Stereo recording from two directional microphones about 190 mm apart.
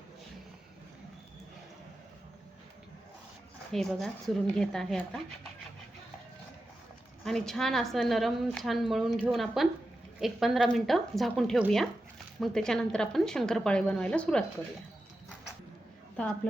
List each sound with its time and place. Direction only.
3.7 s a woman's voice: centre (ahead or behind)
7.3 s a woman's voice: centre (ahead or behind)